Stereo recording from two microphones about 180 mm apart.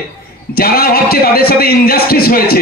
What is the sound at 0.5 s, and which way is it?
A man's voice, 55° left (ahead or behind).